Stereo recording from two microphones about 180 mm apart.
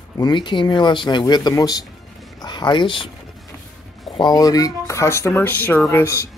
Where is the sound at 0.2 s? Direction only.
25° left (ahead or behind).